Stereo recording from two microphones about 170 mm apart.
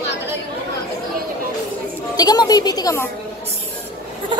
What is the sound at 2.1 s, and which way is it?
Speech, 20° left (ahead or behind).